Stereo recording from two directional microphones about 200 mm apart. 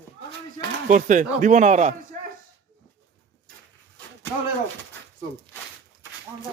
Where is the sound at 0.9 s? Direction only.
40° right (ahead or behind).